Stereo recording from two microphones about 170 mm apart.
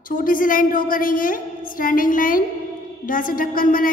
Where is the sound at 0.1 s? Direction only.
55° left (ahead or behind).